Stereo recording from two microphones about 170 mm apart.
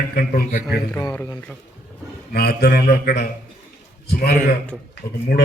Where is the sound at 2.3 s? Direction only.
70° left (ahead or behind).